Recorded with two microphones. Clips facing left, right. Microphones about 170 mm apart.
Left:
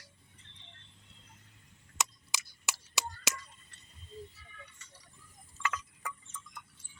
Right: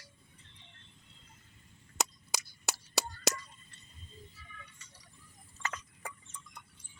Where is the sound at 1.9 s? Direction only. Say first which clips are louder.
Right 2 dB; 40° right (ahead or behind).